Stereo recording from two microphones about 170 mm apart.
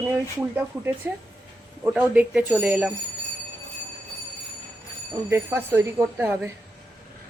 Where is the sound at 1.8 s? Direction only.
5° right (ahead or behind).